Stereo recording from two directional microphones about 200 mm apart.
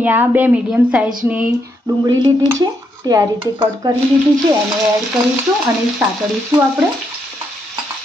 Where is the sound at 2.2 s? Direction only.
20° right (ahead or behind).